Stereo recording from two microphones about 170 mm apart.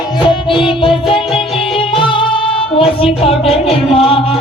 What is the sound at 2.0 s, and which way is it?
Music, 30° left (ahead or behind).